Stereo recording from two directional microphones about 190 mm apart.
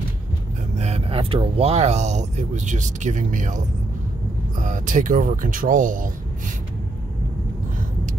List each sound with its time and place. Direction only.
0.7 s speech: 35° right (ahead or behind)